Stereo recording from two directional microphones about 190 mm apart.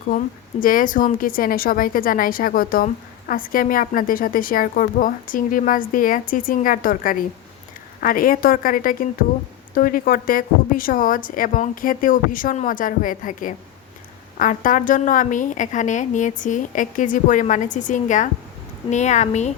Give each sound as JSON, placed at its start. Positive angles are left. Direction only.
{"t": 0.6, "sound": "a woman's voice", "side_deg": 45}